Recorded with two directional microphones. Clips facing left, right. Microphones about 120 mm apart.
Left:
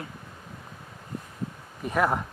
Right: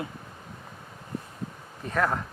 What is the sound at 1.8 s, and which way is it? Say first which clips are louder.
Speech: left 2 dB; 15° left (ahead or behind).